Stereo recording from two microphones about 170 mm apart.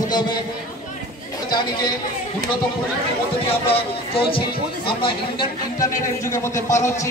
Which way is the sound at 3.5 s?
35° left (ahead or behind).